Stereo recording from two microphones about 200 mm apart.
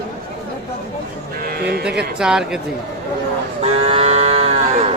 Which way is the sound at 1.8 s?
5° right (ahead or behind).